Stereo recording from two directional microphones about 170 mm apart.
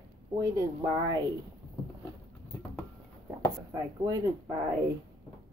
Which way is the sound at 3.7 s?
20° right (ahead or behind).